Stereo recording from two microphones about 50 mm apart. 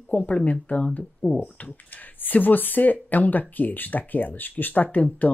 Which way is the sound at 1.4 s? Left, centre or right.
Left.